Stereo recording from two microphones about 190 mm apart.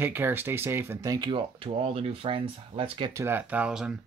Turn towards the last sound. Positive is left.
turn(degrees=-5)  # may be behind; listen again after turning